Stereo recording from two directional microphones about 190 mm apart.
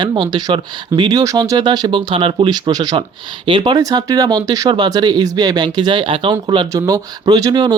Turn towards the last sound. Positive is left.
turn(degrees=-20)  # may be behind; listen again after turning